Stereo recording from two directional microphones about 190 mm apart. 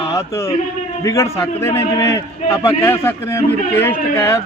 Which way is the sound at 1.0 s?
15° left (ahead or behind).